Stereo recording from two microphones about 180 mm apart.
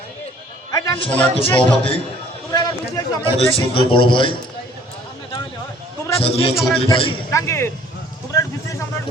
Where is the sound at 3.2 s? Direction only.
30° left (ahead or behind).